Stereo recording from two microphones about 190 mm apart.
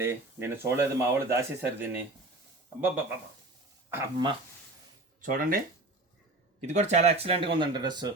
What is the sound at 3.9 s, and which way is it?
Speech, 20° right (ahead or behind).